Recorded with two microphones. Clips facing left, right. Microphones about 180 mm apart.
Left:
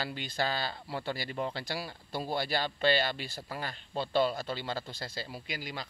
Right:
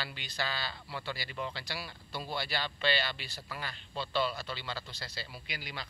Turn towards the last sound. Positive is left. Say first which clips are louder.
# left 4 dB
turn(degrees=45)  # may be behind; listen again after turning